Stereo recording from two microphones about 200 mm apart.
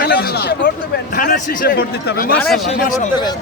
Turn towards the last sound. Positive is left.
turn(degrees=40)  # may be behind; listen again after turning